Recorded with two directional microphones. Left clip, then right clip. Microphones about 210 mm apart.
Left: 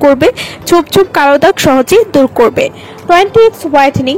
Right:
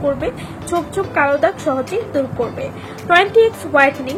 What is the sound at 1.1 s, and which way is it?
Speech, 55° left (ahead or behind).